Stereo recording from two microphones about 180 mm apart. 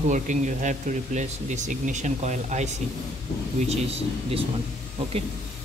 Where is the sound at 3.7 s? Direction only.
35° right (ahead or behind).